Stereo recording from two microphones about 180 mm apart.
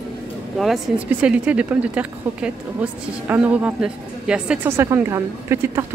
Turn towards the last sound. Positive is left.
turn(degrees=-15)  # may be behind; listen again after turning